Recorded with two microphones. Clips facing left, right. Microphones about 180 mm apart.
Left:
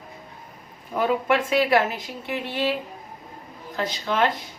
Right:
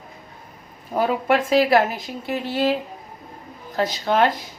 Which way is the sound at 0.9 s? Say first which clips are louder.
Right 2 dB; 35° right (ahead or behind).